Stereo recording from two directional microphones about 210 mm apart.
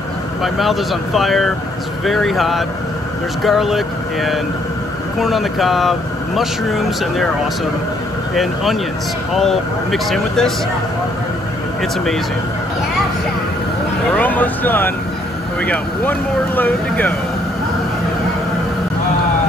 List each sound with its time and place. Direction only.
0.4 s speech: centre (ahead or behind)
9.3 s speech: centre (ahead or behind)
14.1 s speech: 10° left (ahead or behind)